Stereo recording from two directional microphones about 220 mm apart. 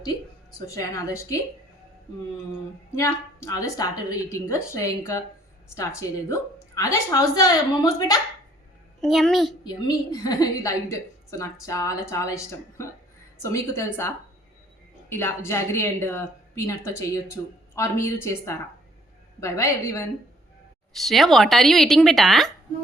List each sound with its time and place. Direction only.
0.6 s a woman's voice: 15° left (ahead or behind)
2.9 s a woman's voice: 15° left (ahead or behind)
9.0 s speech: centre (ahead or behind)
9.6 s a woman's voice: 20° left (ahead or behind)
15.1 s a woman's voice: 10° left (ahead or behind)
20.9 s speech: centre (ahead or behind)